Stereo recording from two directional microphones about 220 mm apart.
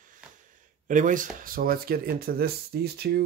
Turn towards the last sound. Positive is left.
turn(degrees=-45)  # may be behind; listen again after turning